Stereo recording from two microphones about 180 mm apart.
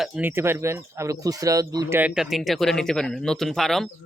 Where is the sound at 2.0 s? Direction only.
5° right (ahead or behind).